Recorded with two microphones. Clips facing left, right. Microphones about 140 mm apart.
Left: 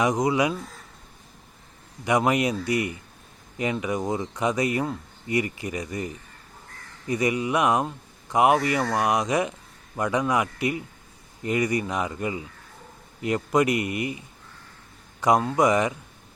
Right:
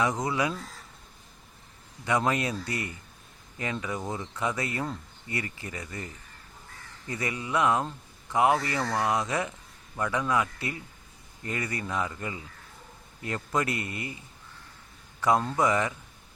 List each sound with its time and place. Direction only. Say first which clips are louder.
0.0 s speech: left 5 dB; 15° left (ahead or behind)
2.0 s speech: left 5 dB; 15° left (ahead or behind)